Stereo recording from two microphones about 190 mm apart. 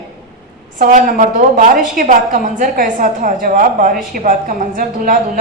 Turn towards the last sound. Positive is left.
turn(degrees=-45)  # may be behind; listen again after turning